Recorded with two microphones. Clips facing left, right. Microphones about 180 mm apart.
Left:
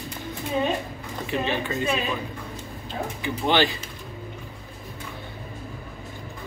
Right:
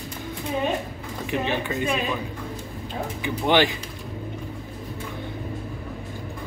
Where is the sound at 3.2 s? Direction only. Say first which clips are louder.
Right 2 dB; 15° right (ahead or behind).